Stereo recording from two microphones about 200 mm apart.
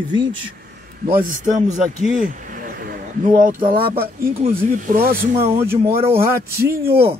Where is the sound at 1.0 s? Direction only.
45° right (ahead or behind).